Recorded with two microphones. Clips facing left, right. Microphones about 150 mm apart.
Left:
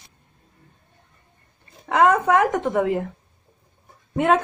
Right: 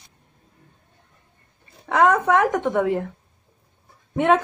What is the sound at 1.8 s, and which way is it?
Speech, centre (ahead or behind).